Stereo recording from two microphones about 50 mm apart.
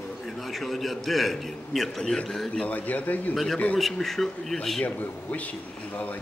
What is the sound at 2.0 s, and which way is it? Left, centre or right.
Speech, centre.